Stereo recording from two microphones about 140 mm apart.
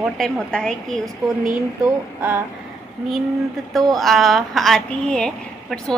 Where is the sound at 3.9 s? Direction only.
Centre (ahead or behind).